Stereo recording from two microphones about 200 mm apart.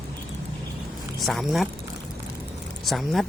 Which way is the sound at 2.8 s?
Centre (ahead or behind).